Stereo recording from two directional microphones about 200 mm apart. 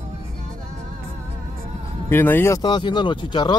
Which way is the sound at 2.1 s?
10° left (ahead or behind).